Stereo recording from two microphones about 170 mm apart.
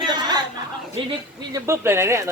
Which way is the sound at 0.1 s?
25° right (ahead or behind).